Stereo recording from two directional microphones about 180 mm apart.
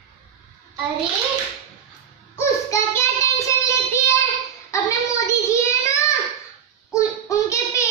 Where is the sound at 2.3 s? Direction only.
15° left (ahead or behind).